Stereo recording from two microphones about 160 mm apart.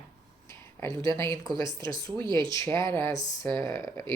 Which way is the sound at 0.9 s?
30° right (ahead or behind).